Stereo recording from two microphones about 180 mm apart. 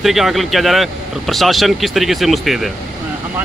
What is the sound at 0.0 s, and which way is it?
Speech, centre (ahead or behind).